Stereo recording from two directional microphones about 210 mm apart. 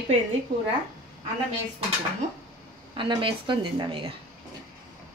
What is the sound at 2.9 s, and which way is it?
A woman's voice, 25° right (ahead or behind).